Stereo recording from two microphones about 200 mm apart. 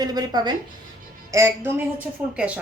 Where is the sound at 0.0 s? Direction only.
20° right (ahead or behind).